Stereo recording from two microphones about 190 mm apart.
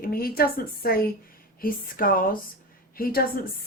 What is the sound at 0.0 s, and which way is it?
A woman's voice, 50° left (ahead or behind).